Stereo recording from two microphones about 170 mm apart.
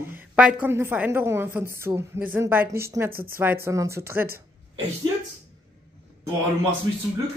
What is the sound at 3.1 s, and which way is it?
Speech, 60° right (ahead or behind).